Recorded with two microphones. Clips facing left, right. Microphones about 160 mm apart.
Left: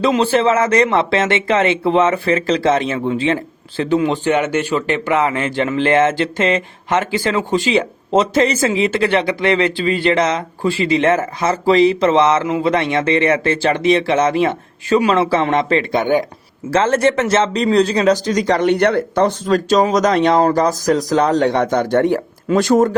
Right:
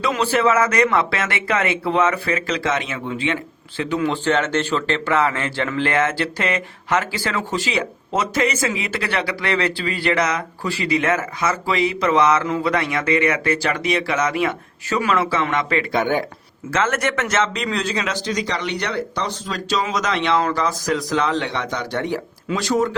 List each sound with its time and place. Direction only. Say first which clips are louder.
0.0 s speech: left 4 dB; 25° left (ahead or behind)
4.1 s speech: left 3 dB; 15° left (ahead or behind)
16.7 s speech: left 7 dB; 30° left (ahead or behind); by 23.0 s 50° left (ahead or behind)